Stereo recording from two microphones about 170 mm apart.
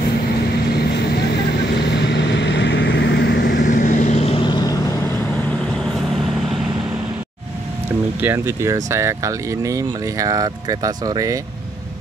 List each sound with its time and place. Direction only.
1.9 s vehicle: 90° left
3.4 s vehicle: 55° left (ahead or behind); by 4.7 s 25° left (ahead or behind)
8.2 s speech: 15° right (ahead or behind)